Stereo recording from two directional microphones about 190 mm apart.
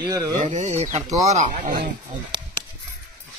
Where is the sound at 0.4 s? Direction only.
35° right (ahead or behind).